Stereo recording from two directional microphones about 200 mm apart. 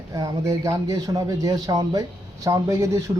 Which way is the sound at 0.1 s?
15° right (ahead or behind).